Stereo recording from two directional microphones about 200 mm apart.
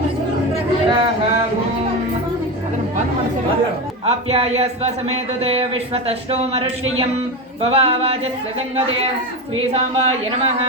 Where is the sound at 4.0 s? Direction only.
30° right (ahead or behind).